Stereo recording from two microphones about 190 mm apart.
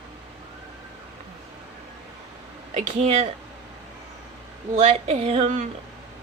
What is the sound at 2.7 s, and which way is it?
Speech, 35° right (ahead or behind).